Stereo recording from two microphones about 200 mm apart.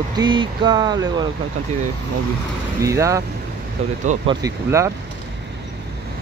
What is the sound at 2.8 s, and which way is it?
Speech, 15° right (ahead or behind).